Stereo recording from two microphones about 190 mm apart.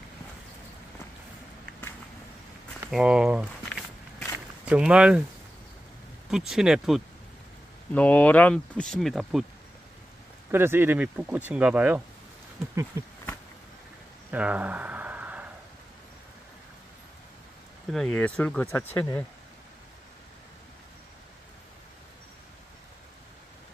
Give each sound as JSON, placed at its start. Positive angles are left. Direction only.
{"t": 2.9, "sound": "walk", "side_deg": -5}
{"t": 6.3, "sound": "speech", "side_deg": -5}
{"t": 7.9, "sound": "speech", "side_deg": 10}
{"t": 10.5, "sound": "speech", "side_deg": -10}
{"t": 14.3, "sound": "a sound", "side_deg": -10}
{"t": 17.9, "sound": "speech", "side_deg": 5}